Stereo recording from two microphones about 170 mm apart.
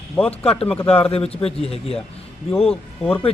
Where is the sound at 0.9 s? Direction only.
35° left (ahead or behind).